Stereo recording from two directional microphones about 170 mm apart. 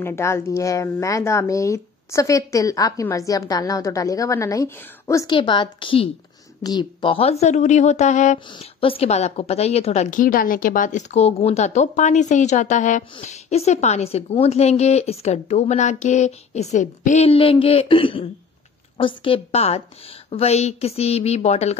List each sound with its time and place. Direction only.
0.0 s a woman's voice: 15° left (ahead or behind); by 8.4 s 45° left (ahead or behind)
8.5 s a woman's voice: 35° left (ahead or behind)